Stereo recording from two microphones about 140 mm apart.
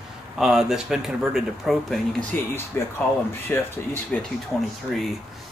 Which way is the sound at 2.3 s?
10° left (ahead or behind).